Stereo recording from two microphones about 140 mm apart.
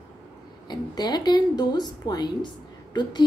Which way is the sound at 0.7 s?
30° left (ahead or behind).